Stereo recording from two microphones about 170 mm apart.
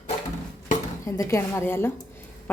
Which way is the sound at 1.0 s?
20° left (ahead or behind).